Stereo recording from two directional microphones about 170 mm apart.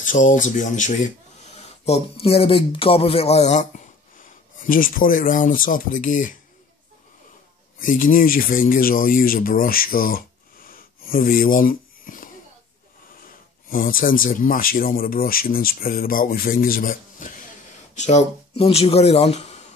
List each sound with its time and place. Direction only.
0.0 s speech: 50° left (ahead or behind)
7.8 s speech: 55° left (ahead or behind)
17.9 s speech: 40° left (ahead or behind)